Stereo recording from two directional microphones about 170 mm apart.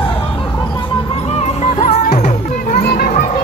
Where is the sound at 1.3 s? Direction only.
40° left (ahead or behind).